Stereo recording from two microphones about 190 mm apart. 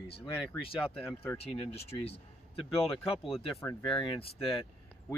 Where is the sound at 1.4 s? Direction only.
30° left (ahead or behind).